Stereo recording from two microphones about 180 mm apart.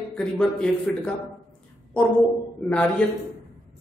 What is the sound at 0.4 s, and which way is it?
Speech, 5° left (ahead or behind).